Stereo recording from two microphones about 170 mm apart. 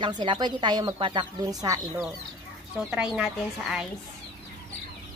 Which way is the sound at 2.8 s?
5° right (ahead or behind).